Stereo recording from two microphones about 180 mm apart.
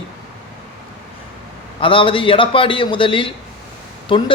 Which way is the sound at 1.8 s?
30° left (ahead or behind).